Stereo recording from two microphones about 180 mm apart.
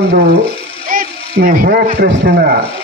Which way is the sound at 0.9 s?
50° right (ahead or behind).